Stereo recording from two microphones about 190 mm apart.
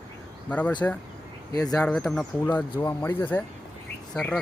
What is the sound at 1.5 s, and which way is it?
Speech, 20° left (ahead or behind).